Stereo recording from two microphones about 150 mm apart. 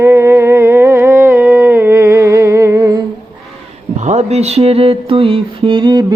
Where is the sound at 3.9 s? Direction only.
50° right (ahead or behind).